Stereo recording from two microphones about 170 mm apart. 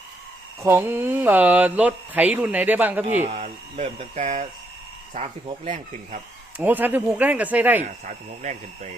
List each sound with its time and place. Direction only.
0.6 s speech: 15° right (ahead or behind)
3.2 s speech: 40° right (ahead or behind)
6.6 s speech: 10° right (ahead or behind)
8.0 s speech: 45° right (ahead or behind)